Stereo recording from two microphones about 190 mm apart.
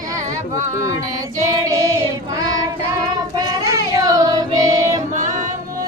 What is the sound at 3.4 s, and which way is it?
Child singing, 15° right (ahead or behind).